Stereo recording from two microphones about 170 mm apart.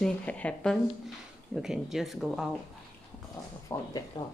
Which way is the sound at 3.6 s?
20° left (ahead or behind).